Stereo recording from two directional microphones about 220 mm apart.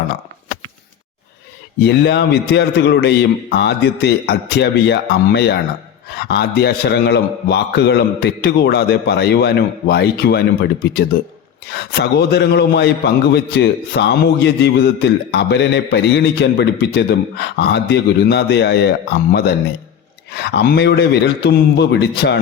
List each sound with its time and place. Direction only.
1.8 s a man's voice: 50° left (ahead or behind)
20.3 s a man's voice: 50° left (ahead or behind)